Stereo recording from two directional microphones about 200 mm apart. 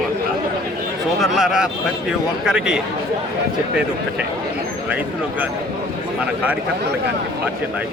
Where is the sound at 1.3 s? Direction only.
Centre (ahead or behind).